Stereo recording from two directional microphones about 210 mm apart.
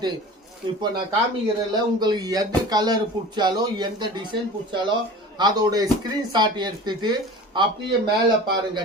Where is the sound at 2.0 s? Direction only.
20° right (ahead or behind).